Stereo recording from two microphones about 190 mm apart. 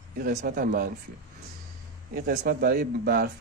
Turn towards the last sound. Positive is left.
turn(degrees=-50)  # may be behind; listen again after turning